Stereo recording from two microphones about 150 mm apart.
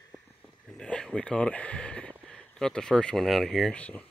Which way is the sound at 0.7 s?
5° left (ahead or behind).